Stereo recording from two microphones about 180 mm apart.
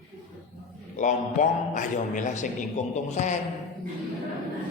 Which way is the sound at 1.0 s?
45° left (ahead or behind).